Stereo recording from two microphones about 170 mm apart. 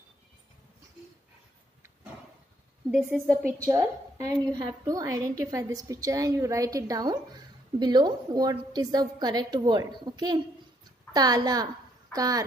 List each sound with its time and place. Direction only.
2.9 s a woman's voice: centre (ahead or behind)
3.6 s a woman's voice: 15° right (ahead or behind)